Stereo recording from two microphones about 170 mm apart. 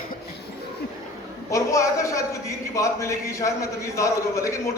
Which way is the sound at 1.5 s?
20° left (ahead or behind).